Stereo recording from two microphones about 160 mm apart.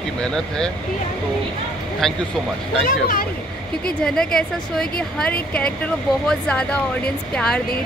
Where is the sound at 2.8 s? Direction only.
60° left (ahead or behind).